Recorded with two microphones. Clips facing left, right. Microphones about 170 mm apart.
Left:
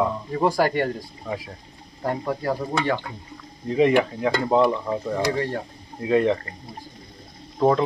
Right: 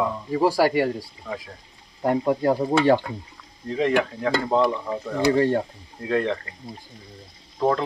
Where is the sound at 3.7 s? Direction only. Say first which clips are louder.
Left 3 dB; 5° left (ahead or behind).